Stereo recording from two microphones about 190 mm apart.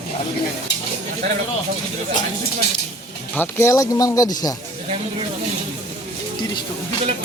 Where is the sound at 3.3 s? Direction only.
10° left (ahead or behind).